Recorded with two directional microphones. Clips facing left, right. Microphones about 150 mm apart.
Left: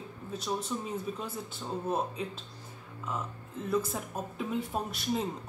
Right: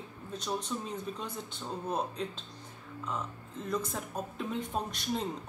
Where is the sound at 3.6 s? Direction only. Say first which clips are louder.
Left 4 dB; 5° left (ahead or behind).